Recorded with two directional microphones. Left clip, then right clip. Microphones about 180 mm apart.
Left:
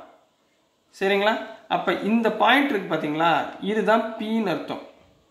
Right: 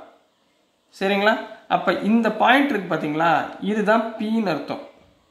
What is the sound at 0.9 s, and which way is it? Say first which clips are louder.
Speech: right 2 dB; 25° right (ahead or behind).